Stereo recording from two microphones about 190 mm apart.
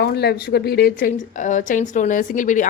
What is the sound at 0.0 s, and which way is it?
A woman's voice, 60° left (ahead or behind).